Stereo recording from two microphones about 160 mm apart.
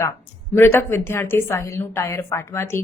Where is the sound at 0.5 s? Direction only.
15° left (ahead or behind).